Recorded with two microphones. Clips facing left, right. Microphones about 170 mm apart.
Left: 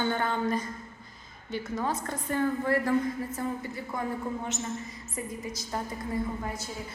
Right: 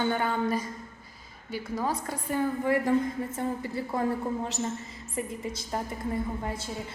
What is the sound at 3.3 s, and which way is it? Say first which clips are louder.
A woman's voice: right 2 dB; 30° right (ahead or behind).